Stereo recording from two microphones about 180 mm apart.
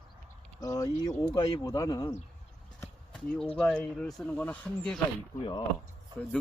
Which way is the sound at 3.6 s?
5° left (ahead or behind).